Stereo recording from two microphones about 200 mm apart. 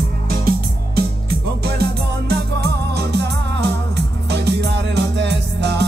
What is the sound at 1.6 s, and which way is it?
Music, 55° right (ahead or behind).